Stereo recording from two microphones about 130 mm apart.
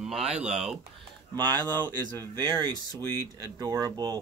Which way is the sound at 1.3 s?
35° right (ahead or behind).